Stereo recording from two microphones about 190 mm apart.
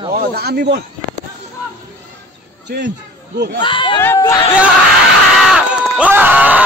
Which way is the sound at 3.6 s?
25° left (ahead or behind).